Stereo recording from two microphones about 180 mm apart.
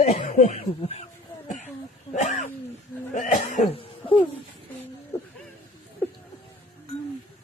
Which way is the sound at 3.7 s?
30° left (ahead or behind).